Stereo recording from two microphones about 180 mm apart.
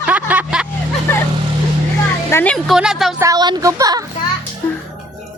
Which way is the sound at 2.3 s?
15° left (ahead or behind).